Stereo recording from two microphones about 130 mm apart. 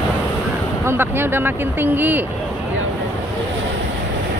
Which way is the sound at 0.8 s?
15° right (ahead or behind).